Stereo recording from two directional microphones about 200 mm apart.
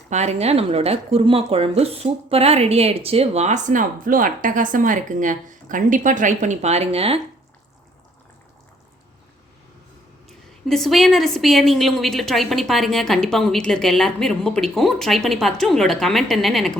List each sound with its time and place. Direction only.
0.1 s speech: 35° right (ahead or behind)
10.2 s a woman's voice: centre (ahead or behind)